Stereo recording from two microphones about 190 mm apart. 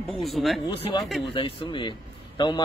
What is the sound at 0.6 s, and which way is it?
Speech, 25° left (ahead or behind).